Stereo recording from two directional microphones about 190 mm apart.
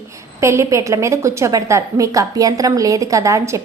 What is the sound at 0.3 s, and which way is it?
A woman's voice, 15° right (ahead or behind).